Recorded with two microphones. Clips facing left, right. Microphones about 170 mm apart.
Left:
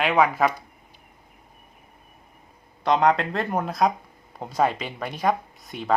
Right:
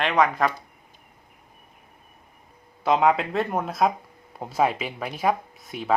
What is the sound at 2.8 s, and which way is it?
Speech, 5° right (ahead or behind).